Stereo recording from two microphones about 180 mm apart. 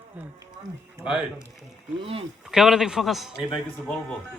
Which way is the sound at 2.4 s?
Centre (ahead or behind).